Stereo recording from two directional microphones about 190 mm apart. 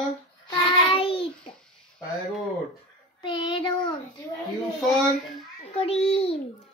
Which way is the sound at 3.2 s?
25° left (ahead or behind).